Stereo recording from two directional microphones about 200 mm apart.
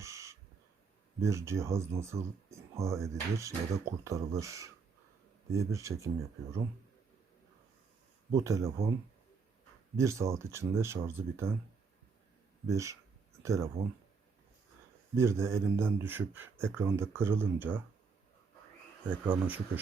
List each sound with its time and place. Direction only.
0.0 s owl: 15° right (ahead or behind)
1.2 s speech: 15° right (ahead or behind)
8.3 s speech: 15° right (ahead or behind)
10.0 s speech: 15° right (ahead or behind)
12.6 s speech: 15° right (ahead or behind)
15.1 s speech: 15° right (ahead or behind)
19.3 s speech: 10° right (ahead or behind)